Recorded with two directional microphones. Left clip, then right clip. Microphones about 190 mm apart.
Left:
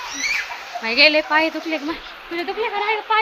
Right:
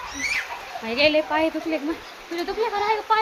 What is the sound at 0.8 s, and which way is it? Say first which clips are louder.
A woman's voice: left 5 dB; 5° left (ahead or behind).